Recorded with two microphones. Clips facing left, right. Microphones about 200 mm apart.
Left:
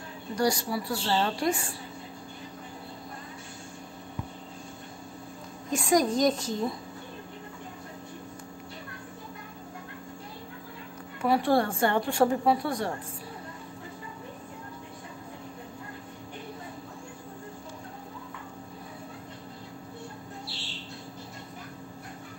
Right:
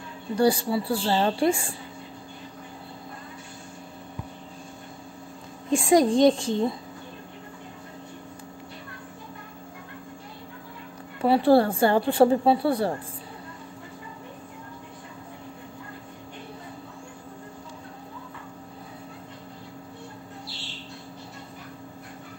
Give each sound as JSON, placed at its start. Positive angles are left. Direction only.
{"t": 0.4, "sound": "a woman's voice", "side_deg": -30}
{"t": 5.7, "sound": "a woman's voice", "side_deg": -30}
{"t": 11.2, "sound": "speech", "side_deg": -30}